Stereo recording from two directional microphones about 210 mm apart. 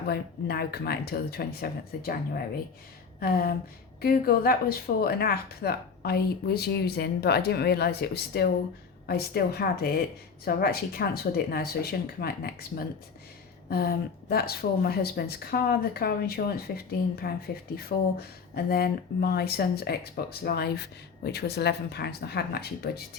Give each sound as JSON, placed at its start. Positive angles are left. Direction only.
{"t": 0.1, "sound": "speech", "side_deg": 50}